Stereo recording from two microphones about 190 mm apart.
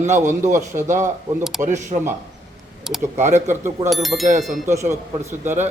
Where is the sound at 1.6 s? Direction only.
40° right (ahead or behind).